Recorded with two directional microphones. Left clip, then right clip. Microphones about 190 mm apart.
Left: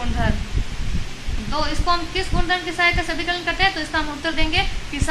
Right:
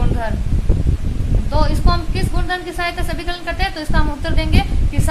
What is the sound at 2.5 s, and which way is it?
A woman's voice, 70° right (ahead or behind).